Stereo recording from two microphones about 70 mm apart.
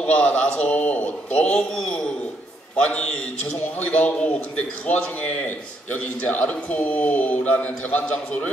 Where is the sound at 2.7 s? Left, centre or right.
Centre.